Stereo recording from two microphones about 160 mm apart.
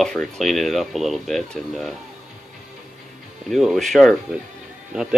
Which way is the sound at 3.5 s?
Centre (ahead or behind).